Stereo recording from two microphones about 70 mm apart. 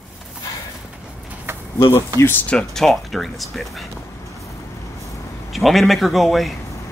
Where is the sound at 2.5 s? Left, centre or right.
Centre.